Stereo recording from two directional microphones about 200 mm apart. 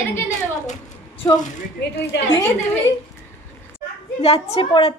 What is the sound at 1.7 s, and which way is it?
Speech, 55° left (ahead or behind).